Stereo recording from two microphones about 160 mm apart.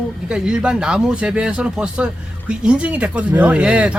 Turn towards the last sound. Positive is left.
turn(degrees=-5)  # may be behind; listen again after turning